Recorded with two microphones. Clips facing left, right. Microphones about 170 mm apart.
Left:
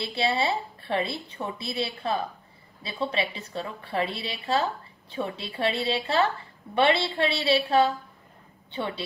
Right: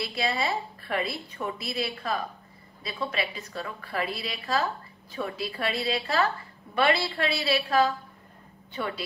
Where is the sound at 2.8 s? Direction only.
30° left (ahead or behind).